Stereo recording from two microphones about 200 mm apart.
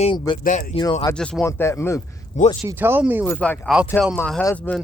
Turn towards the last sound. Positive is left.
turn(degrees=10)  # may be behind; listen again after turning